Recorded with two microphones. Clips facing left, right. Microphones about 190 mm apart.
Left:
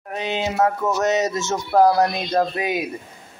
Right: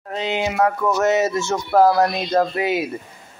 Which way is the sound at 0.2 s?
20° right (ahead or behind).